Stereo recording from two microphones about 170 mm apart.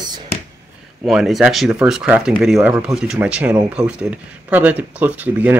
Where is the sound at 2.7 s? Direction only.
15° right (ahead or behind).